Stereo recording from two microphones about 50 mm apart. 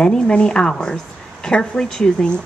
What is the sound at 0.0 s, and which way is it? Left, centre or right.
A woman's voice, centre.